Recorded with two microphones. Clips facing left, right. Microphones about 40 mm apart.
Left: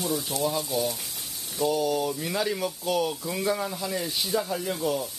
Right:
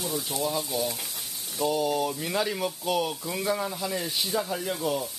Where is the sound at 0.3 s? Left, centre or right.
Centre.